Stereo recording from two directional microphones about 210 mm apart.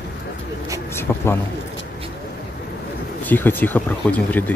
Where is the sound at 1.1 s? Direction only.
10° left (ahead or behind).